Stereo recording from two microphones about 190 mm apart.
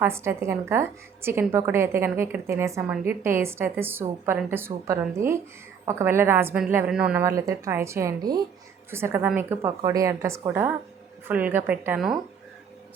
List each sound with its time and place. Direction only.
0.0 s a woman's voice: 15° right (ahead or behind)